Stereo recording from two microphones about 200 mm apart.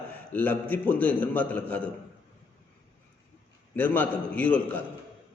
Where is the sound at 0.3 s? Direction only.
10° left (ahead or behind).